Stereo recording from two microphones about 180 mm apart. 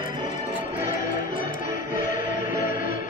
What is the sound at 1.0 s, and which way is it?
Music, 50° left (ahead or behind).